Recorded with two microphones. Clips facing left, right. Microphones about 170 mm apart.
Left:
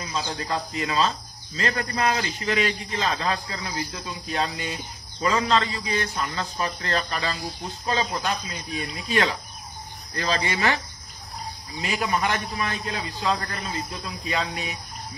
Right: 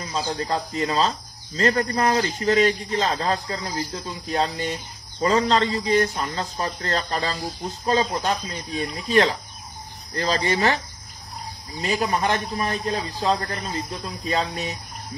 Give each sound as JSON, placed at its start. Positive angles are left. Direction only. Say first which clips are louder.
{"t": 0.0, "sound": "a man's voice", "louder": "right 3 dB", "side_deg": -35}
{"t": 9.0, "sound": "a man's voice", "louder": "right 5 dB", "side_deg": -40}